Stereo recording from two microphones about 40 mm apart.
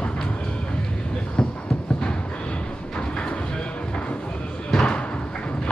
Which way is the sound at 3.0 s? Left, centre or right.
Left.